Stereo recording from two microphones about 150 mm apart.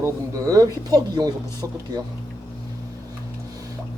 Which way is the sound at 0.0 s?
20° right (ahead or behind).